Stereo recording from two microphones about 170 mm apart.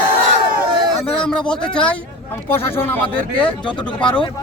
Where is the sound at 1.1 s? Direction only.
5° left (ahead or behind).